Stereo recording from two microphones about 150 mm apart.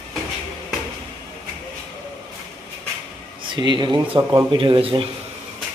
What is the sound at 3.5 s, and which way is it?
Speech, 30° right (ahead or behind).